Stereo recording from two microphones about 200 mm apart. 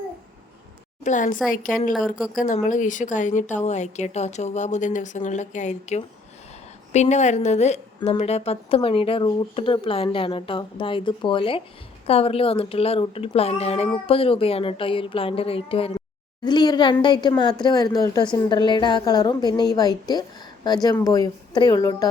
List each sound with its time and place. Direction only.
1.0 s a woman's voice: 40° left (ahead or behind); by 22.1 s 20° left (ahead or behind)